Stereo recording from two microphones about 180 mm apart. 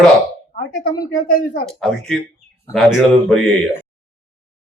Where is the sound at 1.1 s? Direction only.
50° left (ahead or behind).